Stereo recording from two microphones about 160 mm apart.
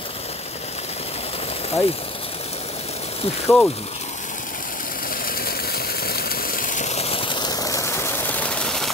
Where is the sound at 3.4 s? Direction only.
5° left (ahead or behind).